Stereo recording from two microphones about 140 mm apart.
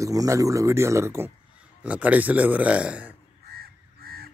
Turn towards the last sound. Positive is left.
turn(degrees=-90)